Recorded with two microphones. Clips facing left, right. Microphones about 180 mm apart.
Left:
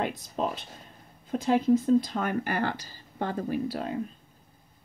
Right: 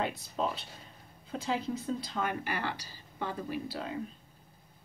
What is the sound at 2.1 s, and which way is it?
Speech, 50° left (ahead or behind).